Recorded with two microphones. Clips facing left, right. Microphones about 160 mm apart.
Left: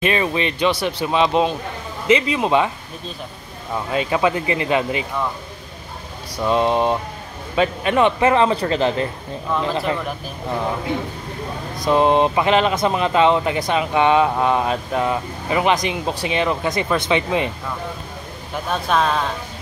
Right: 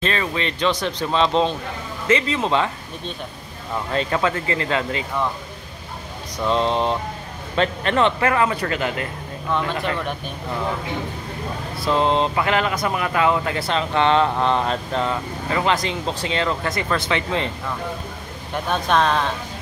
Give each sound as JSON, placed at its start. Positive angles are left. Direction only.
{"t": 0.0, "sound": "speech", "side_deg": 15}
{"t": 3.9, "sound": "speech", "side_deg": 10}
{"t": 6.3, "sound": "speech", "side_deg": 10}
{"t": 9.8, "sound": "speech", "side_deg": 5}
{"t": 11.7, "sound": "speech", "side_deg": 15}
{"t": 18.5, "sound": "speech", "side_deg": 0}